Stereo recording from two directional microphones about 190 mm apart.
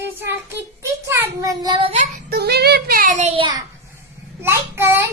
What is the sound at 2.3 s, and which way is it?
Child singing, 60° right (ahead or behind).